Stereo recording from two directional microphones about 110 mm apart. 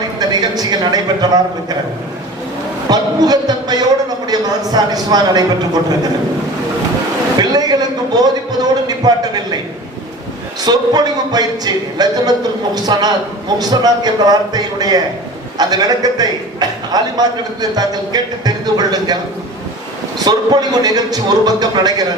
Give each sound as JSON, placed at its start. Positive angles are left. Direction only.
{"t": 0.2, "sound": "a sound", "side_deg": -35}
{"t": 2.9, "sound": "a man's voice", "side_deg": -35}
{"t": 7.3, "sound": "a man's voice", "side_deg": -40}
{"t": 10.6, "sound": "a man's voice", "side_deg": -40}
{"t": 20.1, "sound": "a man's voice", "side_deg": -40}